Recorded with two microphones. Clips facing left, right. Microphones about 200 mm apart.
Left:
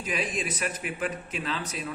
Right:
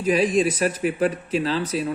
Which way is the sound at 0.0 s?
35° right (ahead or behind).